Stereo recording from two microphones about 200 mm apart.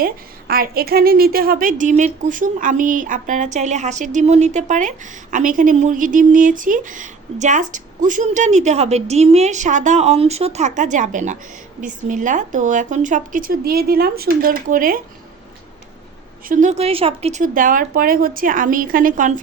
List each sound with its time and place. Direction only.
0.0 s a woman's voice: 50° right (ahead or behind)
16.5 s speech: 40° right (ahead or behind)